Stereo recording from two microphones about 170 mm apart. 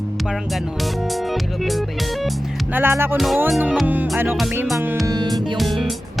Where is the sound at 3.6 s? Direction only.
10° right (ahead or behind).